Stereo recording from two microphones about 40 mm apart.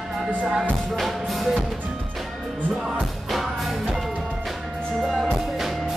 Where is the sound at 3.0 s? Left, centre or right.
Centre.